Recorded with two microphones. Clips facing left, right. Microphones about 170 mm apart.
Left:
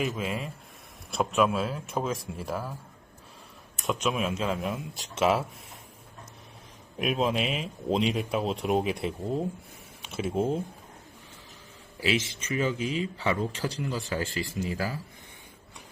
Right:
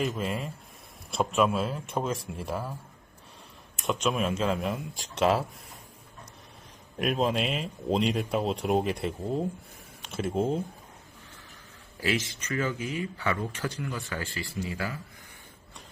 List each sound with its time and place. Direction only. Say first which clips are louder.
0.0 s speech: even; 5° left (ahead or behind)
3.8 s speech: right 1 dB; centre (ahead or behind)
6.9 s speech: even; centre (ahead or behind)
11.9 s speech: left 1 dB; 15° left (ahead or behind); by 14.9 s 35° left (ahead or behind)